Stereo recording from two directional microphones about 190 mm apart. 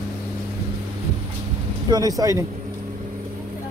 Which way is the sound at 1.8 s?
20° right (ahead or behind).